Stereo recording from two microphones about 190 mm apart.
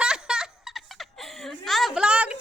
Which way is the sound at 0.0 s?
5° right (ahead or behind).